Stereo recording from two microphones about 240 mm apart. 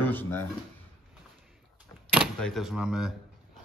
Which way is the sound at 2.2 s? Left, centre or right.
Centre.